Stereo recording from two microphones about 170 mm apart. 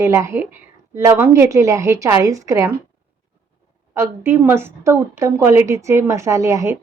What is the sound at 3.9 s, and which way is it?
A woman's voice, 15° right (ahead or behind).